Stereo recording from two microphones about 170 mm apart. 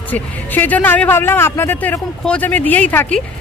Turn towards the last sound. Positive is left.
turn(degrees=10)  # may be behind; listen again after turning